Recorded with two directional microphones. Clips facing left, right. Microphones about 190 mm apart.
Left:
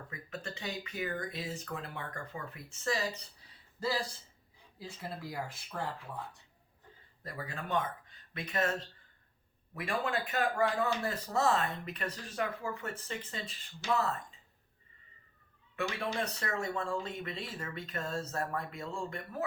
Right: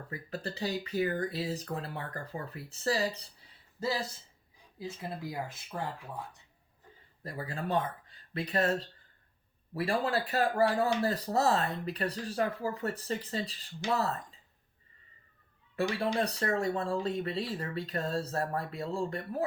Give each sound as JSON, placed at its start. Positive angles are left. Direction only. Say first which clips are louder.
{"t": 0.1, "sound": "speech", "louder": "right 6 dB", "side_deg": -35}
{"t": 3.8, "sound": "speech", "louder": "right 1 dB", "side_deg": -20}
{"t": 7.3, "sound": "speech", "louder": "right 4 dB", "side_deg": -30}
{"t": 15.7, "sound": "speech", "louder": "right 5 dB", "side_deg": -35}